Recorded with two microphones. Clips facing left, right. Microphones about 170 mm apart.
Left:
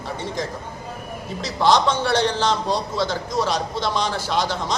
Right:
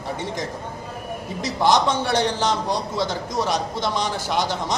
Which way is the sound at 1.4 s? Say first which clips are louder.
Left 1 dB; 15° right (ahead or behind).